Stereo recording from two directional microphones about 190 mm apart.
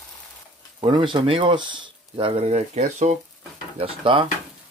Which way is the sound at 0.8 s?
25° right (ahead or behind).